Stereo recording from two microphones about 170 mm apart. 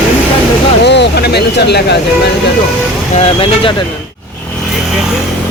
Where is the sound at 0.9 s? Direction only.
80° left.